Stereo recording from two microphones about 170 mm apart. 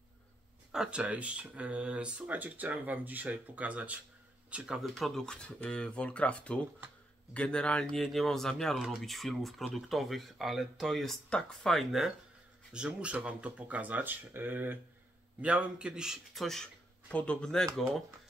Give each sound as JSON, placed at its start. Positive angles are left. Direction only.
{"t": 0.7, "sound": "speech", "side_deg": -5}